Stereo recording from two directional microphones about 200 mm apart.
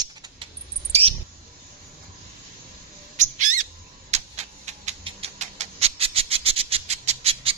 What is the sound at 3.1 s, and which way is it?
Owl, 40° right (ahead or behind).